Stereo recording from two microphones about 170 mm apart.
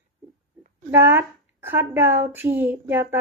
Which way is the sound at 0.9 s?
15° right (ahead or behind).